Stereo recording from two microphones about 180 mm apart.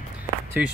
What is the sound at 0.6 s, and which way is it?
Speech, 5° right (ahead or behind).